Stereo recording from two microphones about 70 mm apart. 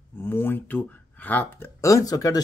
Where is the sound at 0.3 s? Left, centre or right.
Left.